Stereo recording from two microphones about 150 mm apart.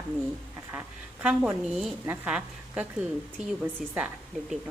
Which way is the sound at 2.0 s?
10° right (ahead or behind).